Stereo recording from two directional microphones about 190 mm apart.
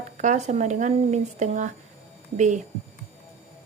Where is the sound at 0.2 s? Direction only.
40° right (ahead or behind).